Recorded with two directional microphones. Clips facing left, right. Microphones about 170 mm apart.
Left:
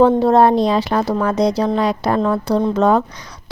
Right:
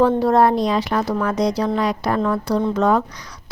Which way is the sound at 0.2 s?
25° left (ahead or behind).